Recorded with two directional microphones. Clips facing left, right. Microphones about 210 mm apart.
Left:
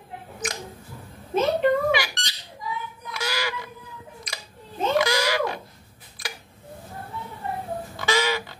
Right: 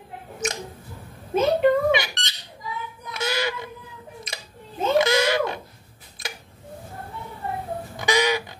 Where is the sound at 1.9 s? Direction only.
20° right (ahead or behind).